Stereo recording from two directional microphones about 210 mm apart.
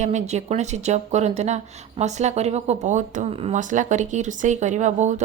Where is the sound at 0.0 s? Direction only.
35° right (ahead or behind).